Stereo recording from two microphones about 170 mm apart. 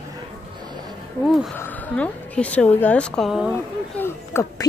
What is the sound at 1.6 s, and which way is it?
Speech, 10° left (ahead or behind).